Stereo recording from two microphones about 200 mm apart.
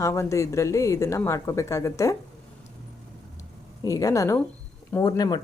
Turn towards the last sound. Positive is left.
turn(degrees=20)  # may be behind; listen again after turning